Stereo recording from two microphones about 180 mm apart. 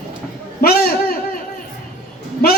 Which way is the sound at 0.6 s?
55° left (ahead or behind).